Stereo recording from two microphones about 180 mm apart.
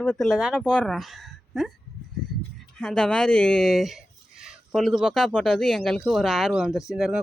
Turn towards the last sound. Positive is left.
turn(degrees=0)  # may be behind; listen again after turning